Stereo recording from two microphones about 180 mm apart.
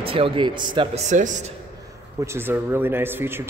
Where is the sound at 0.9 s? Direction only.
40° right (ahead or behind).